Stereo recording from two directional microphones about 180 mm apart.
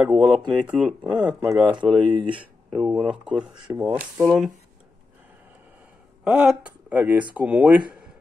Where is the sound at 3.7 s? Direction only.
15° right (ahead or behind).